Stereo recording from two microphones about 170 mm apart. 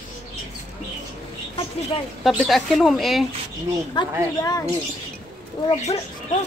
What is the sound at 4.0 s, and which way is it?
Speech, 25° left (ahead or behind).